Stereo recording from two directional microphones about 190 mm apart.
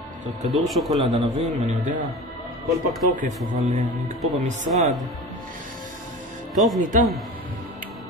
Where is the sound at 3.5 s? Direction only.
35° right (ahead or behind).